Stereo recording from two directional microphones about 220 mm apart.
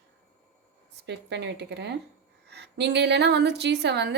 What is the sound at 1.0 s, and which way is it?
A woman's voice, 50° right (ahead or behind).